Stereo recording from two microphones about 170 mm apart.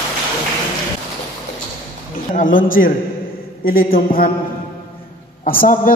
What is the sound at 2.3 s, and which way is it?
A man's voice, 50° left (ahead or behind).